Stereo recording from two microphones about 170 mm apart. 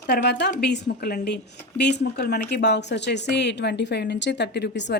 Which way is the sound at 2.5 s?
85° left.